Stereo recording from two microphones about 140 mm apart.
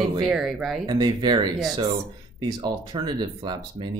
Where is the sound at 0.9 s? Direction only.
30° right (ahead or behind).